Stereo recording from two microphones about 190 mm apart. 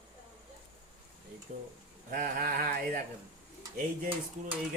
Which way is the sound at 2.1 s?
50° right (ahead or behind).